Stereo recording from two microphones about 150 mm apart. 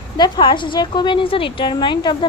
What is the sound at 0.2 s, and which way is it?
A woman's voice, 30° left (ahead or behind).